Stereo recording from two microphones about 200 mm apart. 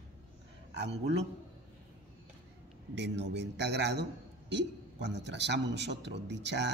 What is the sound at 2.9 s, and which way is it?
Speech, 60° right (ahead or behind).